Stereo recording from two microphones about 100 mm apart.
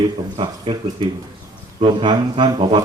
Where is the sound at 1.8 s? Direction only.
55° right (ahead or behind).